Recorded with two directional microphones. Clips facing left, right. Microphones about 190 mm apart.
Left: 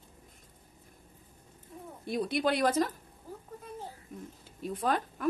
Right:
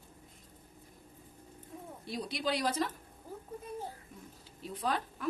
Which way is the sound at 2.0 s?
55° left (ahead or behind).